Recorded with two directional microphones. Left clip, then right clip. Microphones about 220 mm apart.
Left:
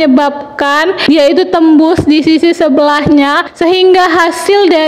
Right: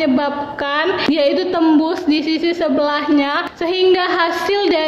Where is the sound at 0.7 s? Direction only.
45° left (ahead or behind).